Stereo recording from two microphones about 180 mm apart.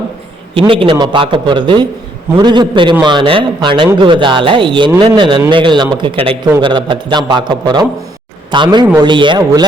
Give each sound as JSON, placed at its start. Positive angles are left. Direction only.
{"t": 0.7, "sound": "speech", "side_deg": -30}